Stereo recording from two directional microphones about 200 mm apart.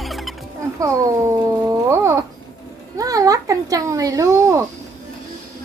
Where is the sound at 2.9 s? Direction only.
15° right (ahead or behind).